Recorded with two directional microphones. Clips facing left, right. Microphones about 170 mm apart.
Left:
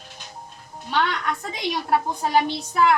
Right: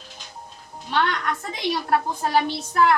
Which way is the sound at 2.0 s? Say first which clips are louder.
Left 1 dB; 10° left (ahead or behind).